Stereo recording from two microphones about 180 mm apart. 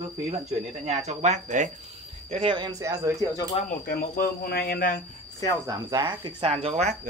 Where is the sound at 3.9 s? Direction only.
55° left (ahead or behind).